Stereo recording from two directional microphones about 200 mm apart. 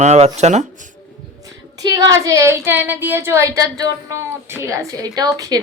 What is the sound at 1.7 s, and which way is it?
Speech, 20° right (ahead or behind).